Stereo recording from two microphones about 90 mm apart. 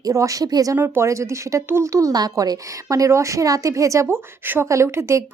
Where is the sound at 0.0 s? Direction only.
35° right (ahead or behind).